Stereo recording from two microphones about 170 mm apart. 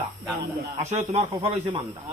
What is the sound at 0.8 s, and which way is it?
A man's voice, 40° right (ahead or behind).